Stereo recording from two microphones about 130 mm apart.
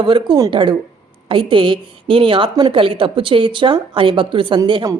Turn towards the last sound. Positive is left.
turn(degrees=-40)  # may be behind; listen again after turning